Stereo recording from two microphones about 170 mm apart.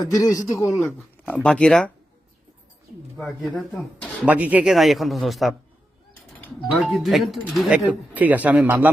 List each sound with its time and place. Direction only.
0.0 s speech: 20° left (ahead or behind)
0.9 s speech: 10° left (ahead or behind)
3.2 s a man's voice: 5° left (ahead or behind)
6.7 s speech: centre (ahead or behind)